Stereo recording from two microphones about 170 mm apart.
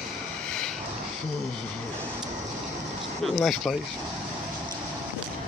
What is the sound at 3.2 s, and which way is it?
Speech, centre (ahead or behind).